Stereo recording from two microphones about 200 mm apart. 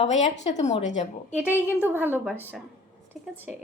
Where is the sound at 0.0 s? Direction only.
35° left (ahead or behind).